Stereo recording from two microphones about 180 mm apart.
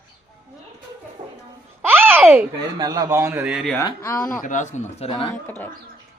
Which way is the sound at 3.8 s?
15° left (ahead or behind).